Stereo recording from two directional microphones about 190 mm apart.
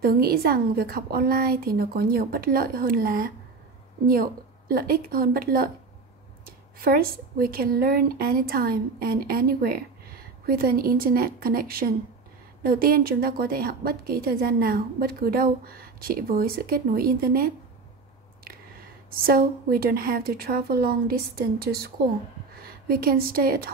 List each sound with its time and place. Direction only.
0.0 s speech: 50° right (ahead or behind)
19.0 s a woman's voice: 50° right (ahead or behind)